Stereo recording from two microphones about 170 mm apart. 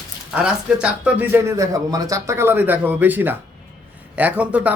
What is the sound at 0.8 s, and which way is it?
Speech, 10° right (ahead or behind).